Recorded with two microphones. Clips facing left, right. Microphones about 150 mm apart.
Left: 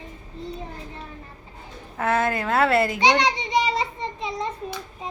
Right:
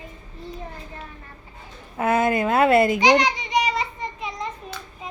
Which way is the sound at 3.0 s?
25° left (ahead or behind).